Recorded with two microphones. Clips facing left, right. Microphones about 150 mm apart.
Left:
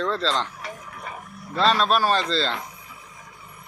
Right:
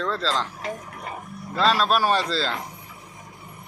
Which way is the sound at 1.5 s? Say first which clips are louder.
Even; 5° right (ahead or behind).